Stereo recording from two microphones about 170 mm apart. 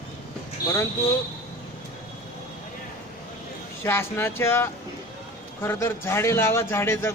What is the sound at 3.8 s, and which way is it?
A man's voice, 15° left (ahead or behind).